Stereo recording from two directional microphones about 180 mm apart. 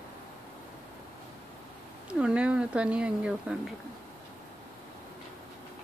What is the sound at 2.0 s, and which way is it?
Speech, 5° right (ahead or behind).